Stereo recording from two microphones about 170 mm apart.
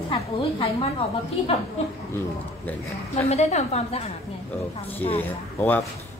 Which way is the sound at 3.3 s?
40° left (ahead or behind).